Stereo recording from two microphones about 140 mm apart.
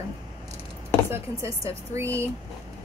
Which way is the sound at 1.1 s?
20° right (ahead or behind).